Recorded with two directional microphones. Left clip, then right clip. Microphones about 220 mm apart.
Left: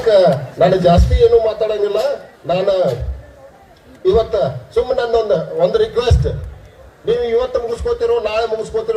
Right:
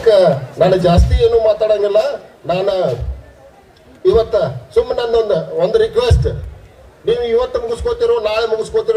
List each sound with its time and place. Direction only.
0.0 s a man's voice: 55° right (ahead or behind)
4.0 s a man's voice: 50° right (ahead or behind)